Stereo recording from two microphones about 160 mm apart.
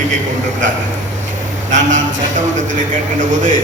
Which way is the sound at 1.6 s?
50° right (ahead or behind).